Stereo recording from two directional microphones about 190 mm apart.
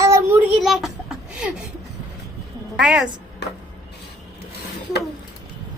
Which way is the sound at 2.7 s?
5° right (ahead or behind).